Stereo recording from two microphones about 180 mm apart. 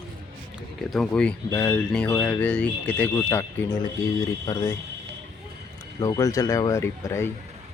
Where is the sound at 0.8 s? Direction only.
Centre (ahead or behind); by 4.7 s 20° left (ahead or behind).